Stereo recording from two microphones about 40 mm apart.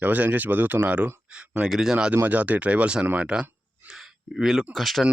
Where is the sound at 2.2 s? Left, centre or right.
Right.